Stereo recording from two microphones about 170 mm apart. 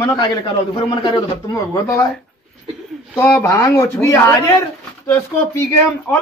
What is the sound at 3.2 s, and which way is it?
Speech, 15° left (ahead or behind).